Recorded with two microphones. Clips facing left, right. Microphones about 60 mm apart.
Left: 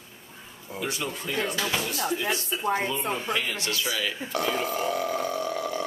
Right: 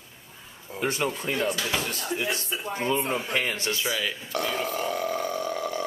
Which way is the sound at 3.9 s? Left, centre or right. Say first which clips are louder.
Even; centre.